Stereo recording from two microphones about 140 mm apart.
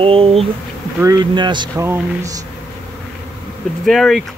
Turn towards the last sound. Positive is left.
turn(degrees=0)  # may be behind; listen again after turning